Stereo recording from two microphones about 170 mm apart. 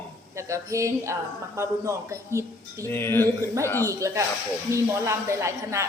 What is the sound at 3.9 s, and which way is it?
A man's voice, 20° right (ahead or behind).